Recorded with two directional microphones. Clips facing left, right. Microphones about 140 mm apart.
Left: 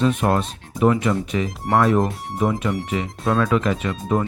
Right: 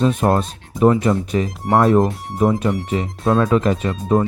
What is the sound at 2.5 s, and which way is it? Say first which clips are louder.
Speech: right 4 dB; 35° right (ahead or behind).